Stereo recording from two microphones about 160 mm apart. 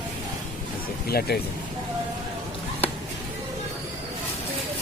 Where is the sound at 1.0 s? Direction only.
70° left (ahead or behind).